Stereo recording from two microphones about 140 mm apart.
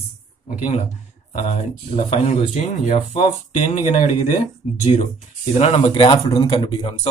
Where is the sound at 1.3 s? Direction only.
55° left (ahead or behind).